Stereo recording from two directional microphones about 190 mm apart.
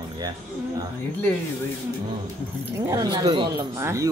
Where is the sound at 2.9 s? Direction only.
20° right (ahead or behind).